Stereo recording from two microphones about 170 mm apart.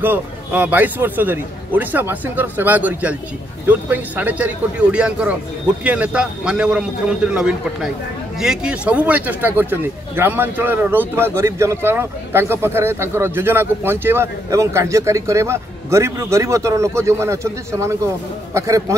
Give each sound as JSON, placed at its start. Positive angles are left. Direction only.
{"t": 0.0, "sound": "a man's voice", "side_deg": -10}